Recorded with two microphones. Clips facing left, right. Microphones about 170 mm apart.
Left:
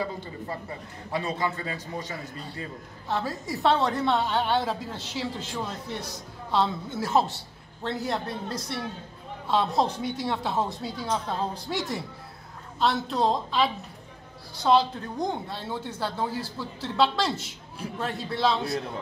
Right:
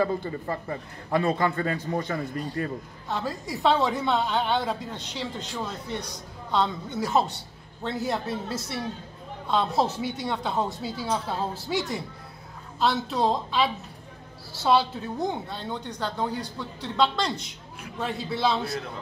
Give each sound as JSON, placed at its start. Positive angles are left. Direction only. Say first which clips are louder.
{"t": 0.0, "sound": "a man's voice", "louder": "right 6 dB", "side_deg": -50}
{"t": 3.1, "sound": "a woman's voice", "louder": "left 1 dB", "side_deg": 0}